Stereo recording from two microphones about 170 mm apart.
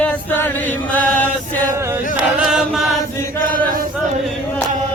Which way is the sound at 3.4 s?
55° right (ahead or behind).